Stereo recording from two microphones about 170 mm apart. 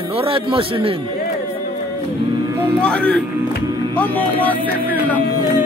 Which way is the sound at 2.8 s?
5° left (ahead or behind).